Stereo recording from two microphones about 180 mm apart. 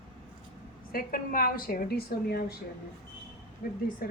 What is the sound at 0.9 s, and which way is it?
A woman's voice, 50° left (ahead or behind).